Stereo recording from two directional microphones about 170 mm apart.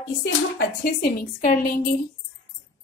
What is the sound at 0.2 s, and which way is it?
Speech, 80° left.